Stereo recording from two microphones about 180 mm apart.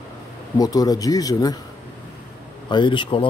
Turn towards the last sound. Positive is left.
turn(degrees=30)  # may be behind; listen again after turning